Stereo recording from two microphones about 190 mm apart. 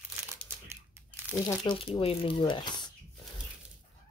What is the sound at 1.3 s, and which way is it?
Speech, 20° left (ahead or behind).